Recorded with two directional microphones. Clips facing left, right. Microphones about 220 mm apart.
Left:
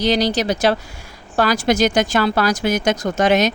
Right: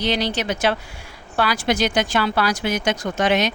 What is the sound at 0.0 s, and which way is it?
A woman's voice, 40° left (ahead or behind).